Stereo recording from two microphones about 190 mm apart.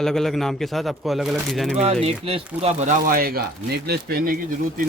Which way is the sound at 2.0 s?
30° right (ahead or behind).